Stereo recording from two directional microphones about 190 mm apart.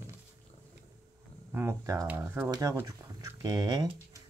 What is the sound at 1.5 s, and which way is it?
Speech, 15° right (ahead or behind).